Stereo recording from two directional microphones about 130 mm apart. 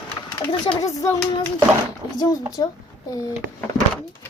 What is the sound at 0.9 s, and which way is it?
Speech, 25° left (ahead or behind).